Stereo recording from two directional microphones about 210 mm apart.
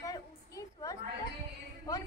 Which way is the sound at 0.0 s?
15° left (ahead or behind).